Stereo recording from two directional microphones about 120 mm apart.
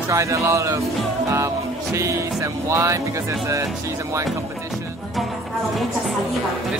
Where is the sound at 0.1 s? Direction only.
25° right (ahead or behind).